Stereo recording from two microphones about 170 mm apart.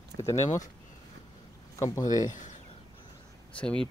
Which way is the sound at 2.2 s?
45° left (ahead or behind).